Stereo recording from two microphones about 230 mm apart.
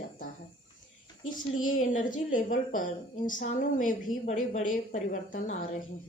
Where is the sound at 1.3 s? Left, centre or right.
Left.